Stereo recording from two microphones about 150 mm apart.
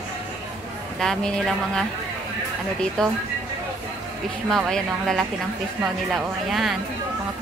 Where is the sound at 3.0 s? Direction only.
5° left (ahead or behind).